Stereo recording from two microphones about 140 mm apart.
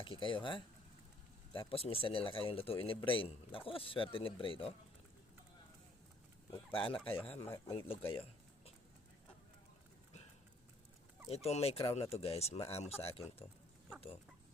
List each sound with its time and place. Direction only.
0.0 s speech: 35° left (ahead or behind)
6.7 s speech: 40° left (ahead or behind)
7.3 s speech: 15° left (ahead or behind)
7.7 s speech: 40° left (ahead or behind)
11.4 s speech: 45° left (ahead or behind)